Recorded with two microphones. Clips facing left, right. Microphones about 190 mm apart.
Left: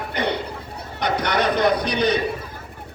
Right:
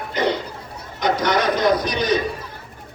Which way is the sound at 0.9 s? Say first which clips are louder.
Right 2 dB; 60° left (ahead or behind).